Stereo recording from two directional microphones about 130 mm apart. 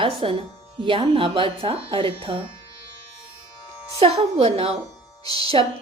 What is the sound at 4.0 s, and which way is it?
A woman's voice, 50° right (ahead or behind).